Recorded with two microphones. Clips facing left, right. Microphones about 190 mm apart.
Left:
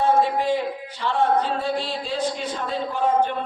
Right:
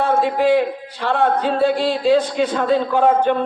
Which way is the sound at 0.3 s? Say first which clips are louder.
Right 7 dB; 75° right (ahead or behind).